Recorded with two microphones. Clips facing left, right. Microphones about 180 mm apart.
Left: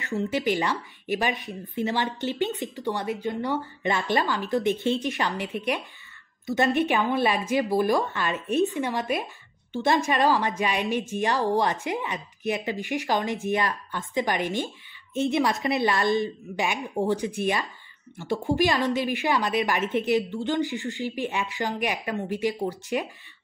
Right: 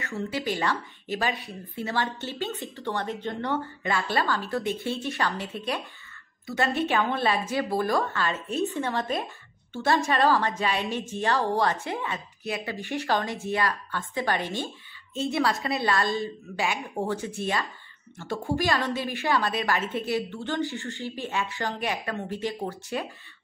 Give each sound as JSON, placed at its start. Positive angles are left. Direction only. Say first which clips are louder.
{"t": 0.0, "sound": "speech", "louder": "left 4 dB", "side_deg": 20}